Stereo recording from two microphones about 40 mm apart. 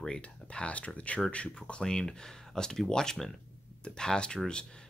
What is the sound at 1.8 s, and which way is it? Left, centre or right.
Speech, centre.